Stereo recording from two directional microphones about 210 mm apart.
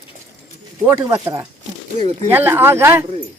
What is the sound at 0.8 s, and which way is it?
Speech, 15° right (ahead or behind).